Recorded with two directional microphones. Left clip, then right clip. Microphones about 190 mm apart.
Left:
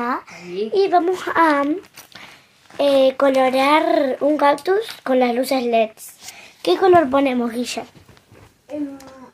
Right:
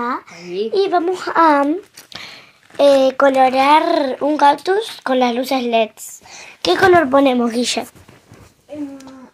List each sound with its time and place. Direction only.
0.0 s a sound: 10° left (ahead or behind)
0.7 s speech: centre (ahead or behind)
1.4 s speech: 10° right (ahead or behind)
2.8 s speech: 10° right (ahead or behind)
7.1 s speech: 20° right (ahead or behind); by 7.8 s 35° right (ahead or behind)